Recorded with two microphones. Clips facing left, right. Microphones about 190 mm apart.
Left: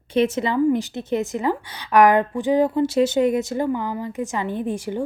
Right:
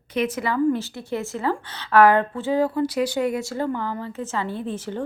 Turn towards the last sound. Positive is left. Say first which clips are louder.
# left 4 dB
turn(degrees=15)  # may be behind; listen again after turning